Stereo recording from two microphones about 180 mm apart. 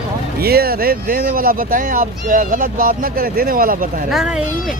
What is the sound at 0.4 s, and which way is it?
Speech, 60° right (ahead or behind).